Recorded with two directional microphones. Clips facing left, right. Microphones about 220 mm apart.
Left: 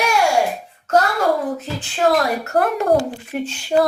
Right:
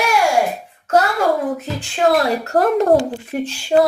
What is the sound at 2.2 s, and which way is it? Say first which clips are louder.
Speech: right 2 dB; 30° right (ahead or behind).